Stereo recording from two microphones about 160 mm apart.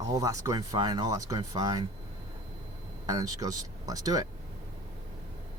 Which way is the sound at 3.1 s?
25° right (ahead or behind).